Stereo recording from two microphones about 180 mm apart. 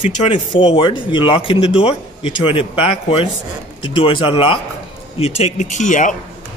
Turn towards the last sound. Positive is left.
turn(degrees=45)  # may be behind; listen again after turning